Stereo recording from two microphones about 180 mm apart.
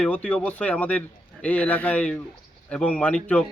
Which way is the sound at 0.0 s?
5° left (ahead or behind).